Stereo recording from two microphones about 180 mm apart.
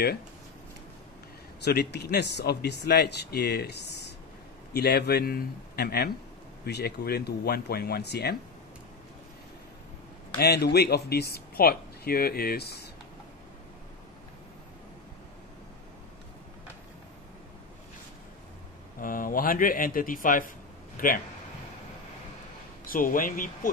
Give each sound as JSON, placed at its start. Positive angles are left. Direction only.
{"t": 1.6, "sound": "speech", "side_deg": 65}
{"t": 4.7, "sound": "speech", "side_deg": 65}
{"t": 10.4, "sound": "speech", "side_deg": 65}
{"t": 18.9, "sound": "speech", "side_deg": 50}
{"t": 22.8, "sound": "speech", "side_deg": 50}